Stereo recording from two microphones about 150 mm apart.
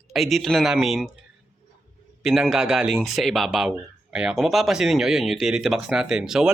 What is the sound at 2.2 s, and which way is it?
Speech, centre (ahead or behind).